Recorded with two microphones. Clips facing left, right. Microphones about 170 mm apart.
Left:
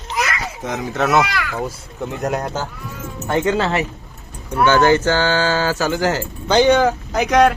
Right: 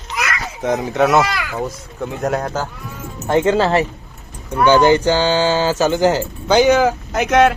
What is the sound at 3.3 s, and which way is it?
Speech, 25° right (ahead or behind).